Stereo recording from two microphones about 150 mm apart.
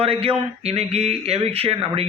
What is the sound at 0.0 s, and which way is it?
A man's voice, 40° right (ahead or behind).